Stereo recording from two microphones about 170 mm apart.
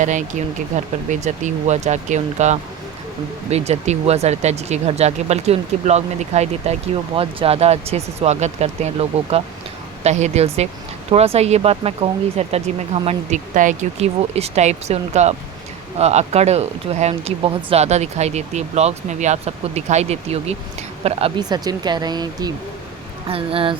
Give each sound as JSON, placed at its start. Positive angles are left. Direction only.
{"t": 0.0, "sound": "speech", "side_deg": -45}